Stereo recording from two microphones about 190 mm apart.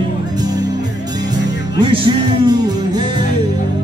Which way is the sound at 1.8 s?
25° right (ahead or behind).